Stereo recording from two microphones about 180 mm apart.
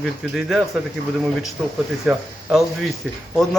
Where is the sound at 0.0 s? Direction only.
Centre (ahead or behind).